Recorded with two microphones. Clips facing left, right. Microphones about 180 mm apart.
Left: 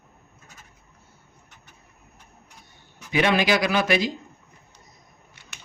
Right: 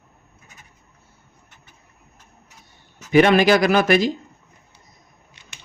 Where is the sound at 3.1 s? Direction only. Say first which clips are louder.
Right 7 dB; 50° right (ahead or behind).